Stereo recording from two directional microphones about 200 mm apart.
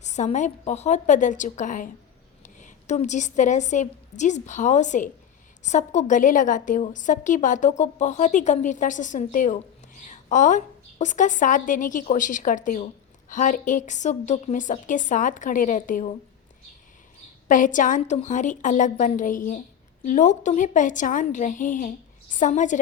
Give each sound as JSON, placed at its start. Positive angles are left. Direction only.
{"t": 0.0, "sound": "a woman's voice", "side_deg": 35}
{"t": 17.5, "sound": "a woman's voice", "side_deg": 40}